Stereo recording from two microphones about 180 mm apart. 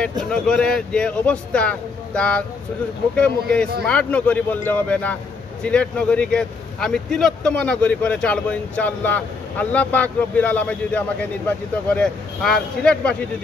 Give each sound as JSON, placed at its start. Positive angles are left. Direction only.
{"t": 0.3, "sound": "speech", "side_deg": 5}